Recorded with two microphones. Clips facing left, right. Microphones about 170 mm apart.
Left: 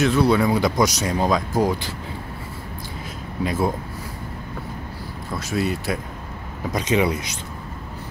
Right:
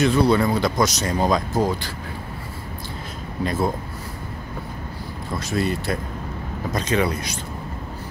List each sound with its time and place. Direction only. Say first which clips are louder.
0.0 s speech: even; 5° left (ahead or behind)
3.4 s speech: even; 10° left (ahead or behind)
5.5 s speech: even; 5° left (ahead or behind)
6.7 s speech: left 2 dB; 15° left (ahead or behind)